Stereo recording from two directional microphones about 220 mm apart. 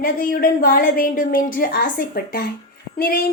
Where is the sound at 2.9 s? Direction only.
45° left (ahead or behind).